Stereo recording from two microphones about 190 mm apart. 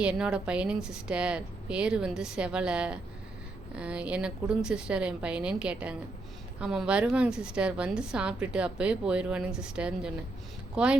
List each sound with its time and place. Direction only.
0.0 s a woman's voice: 5° right (ahead or behind)